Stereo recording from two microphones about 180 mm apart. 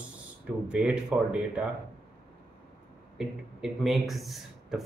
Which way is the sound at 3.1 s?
5° right (ahead or behind).